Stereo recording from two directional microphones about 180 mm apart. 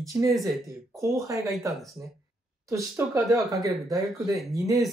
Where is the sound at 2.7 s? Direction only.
15° right (ahead or behind).